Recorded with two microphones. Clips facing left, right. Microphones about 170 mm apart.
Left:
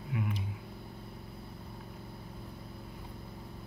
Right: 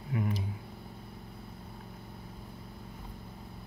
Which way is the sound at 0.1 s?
40° right (ahead or behind).